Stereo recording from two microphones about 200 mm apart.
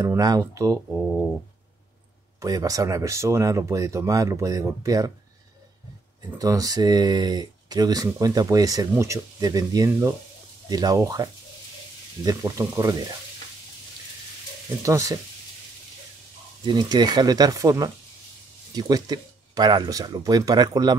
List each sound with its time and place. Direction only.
0.0 s speech: 15° right (ahead or behind)
2.4 s speech: 15° right (ahead or behind)
6.3 s speech: 20° right (ahead or behind)
14.8 s speech: 15° right (ahead or behind)
16.6 s speech: 20° right (ahead or behind)